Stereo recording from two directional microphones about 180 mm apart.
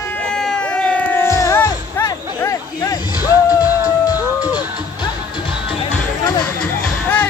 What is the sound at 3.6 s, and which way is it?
Music, 20° left (ahead or behind).